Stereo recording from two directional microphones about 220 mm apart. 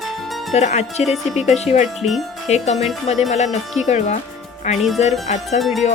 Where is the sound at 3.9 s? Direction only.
30° left (ahead or behind).